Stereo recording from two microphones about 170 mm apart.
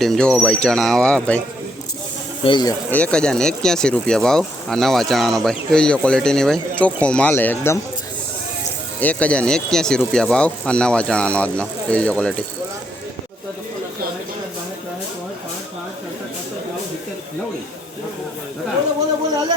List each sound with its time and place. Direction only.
0.0 s speech: 5° left (ahead or behind)
2.4 s speech: 25° left (ahead or behind)
2.9 s speech: 5° left (ahead or behind)
9.0 s speech: 10° left (ahead or behind)